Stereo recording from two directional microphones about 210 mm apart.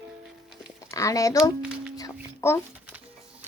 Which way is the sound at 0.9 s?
15° left (ahead or behind).